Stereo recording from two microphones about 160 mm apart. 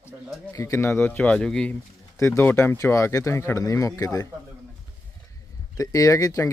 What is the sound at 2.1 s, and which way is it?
Speech, 20° left (ahead or behind).